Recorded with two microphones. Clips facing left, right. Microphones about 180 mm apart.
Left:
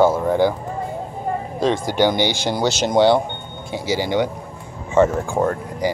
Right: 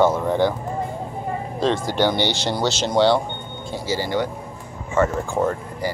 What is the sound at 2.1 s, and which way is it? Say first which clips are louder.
Speech: left 2 dB; 45° left (ahead or behind).